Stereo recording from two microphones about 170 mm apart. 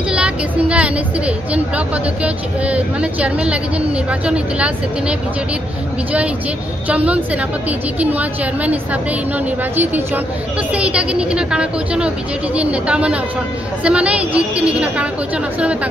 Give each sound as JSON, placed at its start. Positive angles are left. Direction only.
{"t": 0.1, "sound": "a woman's voice", "side_deg": -5}
{"t": 6.9, "sound": "a woman's voice", "side_deg": -10}